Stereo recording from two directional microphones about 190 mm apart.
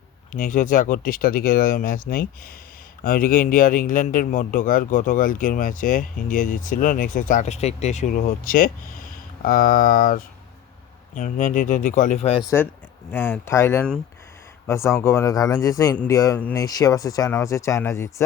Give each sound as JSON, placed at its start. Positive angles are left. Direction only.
{"t": 0.3, "sound": "a man's voice", "side_deg": 45}
{"t": 12.4, "sound": "speech", "side_deg": 15}